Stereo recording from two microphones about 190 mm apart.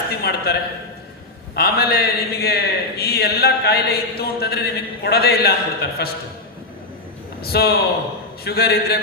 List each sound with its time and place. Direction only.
0.1 s a sound: 55° left (ahead or behind)
1.5 s speech: 55° left (ahead or behind)
7.4 s speech: 55° left (ahead or behind)